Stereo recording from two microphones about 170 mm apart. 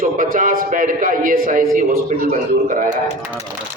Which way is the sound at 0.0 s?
50° right (ahead or behind).